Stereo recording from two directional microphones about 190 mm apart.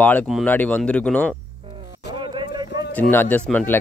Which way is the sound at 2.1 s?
25° right (ahead or behind).